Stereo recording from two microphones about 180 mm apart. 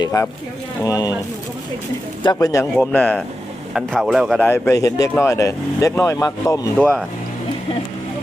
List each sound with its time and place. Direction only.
0.0 s speech: 15° left (ahead or behind)
2.2 s speech: 20° left (ahead or behind)
2.7 s speech: 5° left (ahead or behind)
3.8 s speech: centre (ahead or behind)
4.4 s speech: 10° left (ahead or behind)